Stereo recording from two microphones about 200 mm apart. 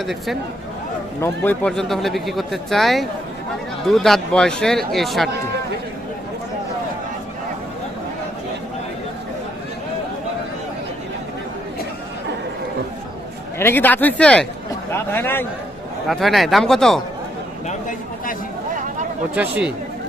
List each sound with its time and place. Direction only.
0.0 s speech: centre (ahead or behind)
13.6 s speech: 10° left (ahead or behind)
16.0 s speech: centre (ahead or behind)
17.7 s a sound: 40° left (ahead or behind)
19.4 s speech: 5° right (ahead or behind)